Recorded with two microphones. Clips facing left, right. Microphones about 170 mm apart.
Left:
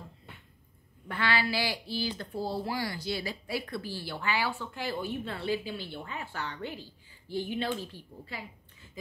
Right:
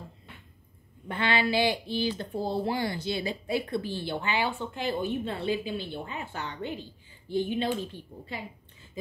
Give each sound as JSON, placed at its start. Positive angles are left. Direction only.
{"t": 1.0, "sound": "speech", "side_deg": -20}